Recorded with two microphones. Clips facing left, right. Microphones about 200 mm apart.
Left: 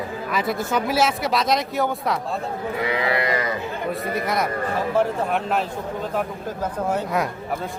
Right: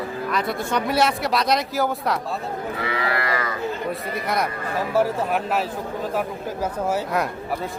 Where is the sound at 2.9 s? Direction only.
20° left (ahead or behind).